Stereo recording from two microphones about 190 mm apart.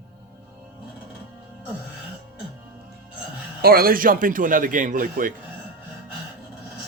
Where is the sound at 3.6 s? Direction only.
50° right (ahead or behind).